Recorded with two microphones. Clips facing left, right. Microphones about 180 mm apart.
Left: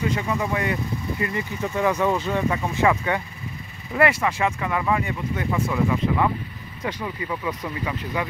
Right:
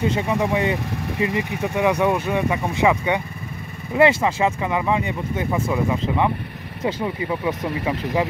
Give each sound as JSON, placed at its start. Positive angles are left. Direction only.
{"t": 0.0, "sound": "speech", "side_deg": -25}
{"t": 0.8, "sound": "vehicle", "side_deg": -80}
{"t": 1.4, "sound": "speech", "side_deg": -70}
{"t": 1.8, "sound": "speech", "side_deg": -15}